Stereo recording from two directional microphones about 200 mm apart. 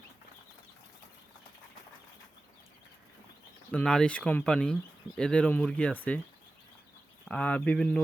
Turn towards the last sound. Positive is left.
turn(degrees=5)  # may be behind; listen again after turning